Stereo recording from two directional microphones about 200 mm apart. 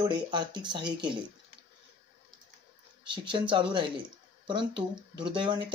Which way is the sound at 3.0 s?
25° right (ahead or behind).